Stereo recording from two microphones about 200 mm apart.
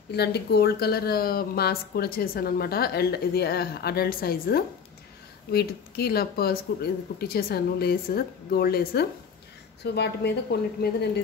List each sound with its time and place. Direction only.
0.1 s a woman's voice: 55° left (ahead or behind)